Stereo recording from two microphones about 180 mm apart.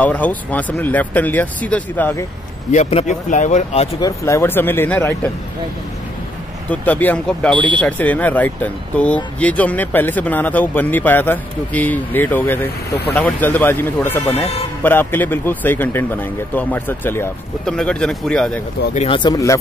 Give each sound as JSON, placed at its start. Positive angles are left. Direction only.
{"t": 0.0, "sound": "speech", "side_deg": 10}
{"t": 2.7, "sound": "speech", "side_deg": 35}
{"t": 4.0, "sound": "speech", "side_deg": 15}
{"t": 6.7, "sound": "speech", "side_deg": 10}
{"t": 7.5, "sound": "speech", "side_deg": -25}
{"t": 7.8, "sound": "a man's voice", "side_deg": 10}
{"t": 18.9, "sound": "speech", "side_deg": 25}